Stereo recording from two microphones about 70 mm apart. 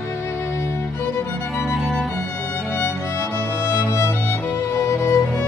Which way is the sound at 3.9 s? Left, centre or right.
Left.